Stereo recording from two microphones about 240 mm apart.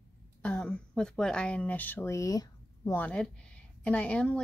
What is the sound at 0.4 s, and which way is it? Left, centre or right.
Speech, centre.